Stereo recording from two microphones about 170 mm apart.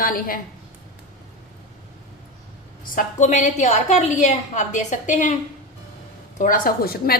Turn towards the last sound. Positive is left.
turn(degrees=60)  # may be behind; listen again after turning